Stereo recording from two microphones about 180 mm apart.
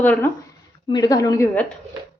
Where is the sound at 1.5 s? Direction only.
10° left (ahead or behind).